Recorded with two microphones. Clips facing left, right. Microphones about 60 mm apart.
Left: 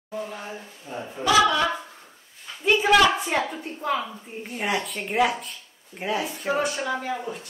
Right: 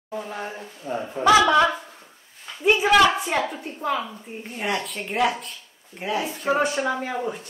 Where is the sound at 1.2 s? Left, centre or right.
Right.